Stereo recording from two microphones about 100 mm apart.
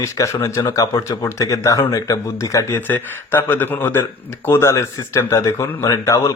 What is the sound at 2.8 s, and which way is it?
Speech, 20° left (ahead or behind).